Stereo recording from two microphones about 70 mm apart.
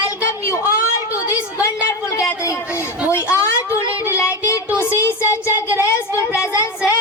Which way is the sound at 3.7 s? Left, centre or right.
Left.